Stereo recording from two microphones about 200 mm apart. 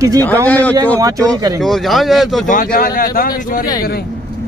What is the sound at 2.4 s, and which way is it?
Speech, 45° left (ahead or behind).